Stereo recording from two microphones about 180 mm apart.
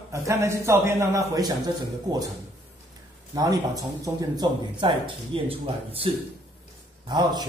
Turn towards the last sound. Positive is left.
turn(degrees=-25)  # may be behind; listen again after turning